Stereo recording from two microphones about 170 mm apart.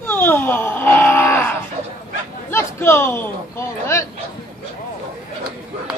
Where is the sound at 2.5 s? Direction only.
15° left (ahead or behind).